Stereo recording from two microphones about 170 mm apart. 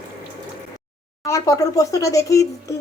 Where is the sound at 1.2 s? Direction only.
20° left (ahead or behind).